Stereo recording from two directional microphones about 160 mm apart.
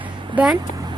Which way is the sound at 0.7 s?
25° right (ahead or behind).